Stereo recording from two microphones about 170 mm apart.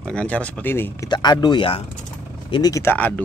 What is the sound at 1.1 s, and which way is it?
Speech, 25° left (ahead or behind).